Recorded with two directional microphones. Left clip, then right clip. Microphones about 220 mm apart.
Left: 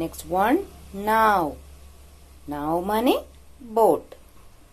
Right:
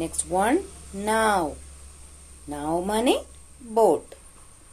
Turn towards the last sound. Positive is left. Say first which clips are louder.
# left 1 dB
turn(degrees=15)  # may be behind; listen again after turning